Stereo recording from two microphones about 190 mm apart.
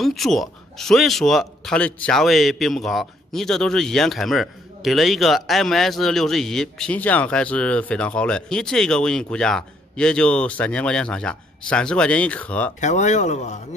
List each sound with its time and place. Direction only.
0.0 s speech: centre (ahead or behind)
12.8 s speech: 40° left (ahead or behind)